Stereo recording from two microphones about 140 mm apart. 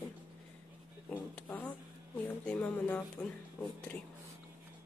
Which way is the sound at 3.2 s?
15° left (ahead or behind).